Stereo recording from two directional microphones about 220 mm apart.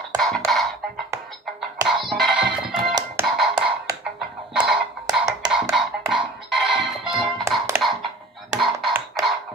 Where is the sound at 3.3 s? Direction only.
5° right (ahead or behind).